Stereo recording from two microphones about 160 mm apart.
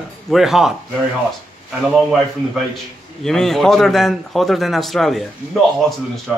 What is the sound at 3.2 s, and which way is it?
A man's voice, 5° left (ahead or behind).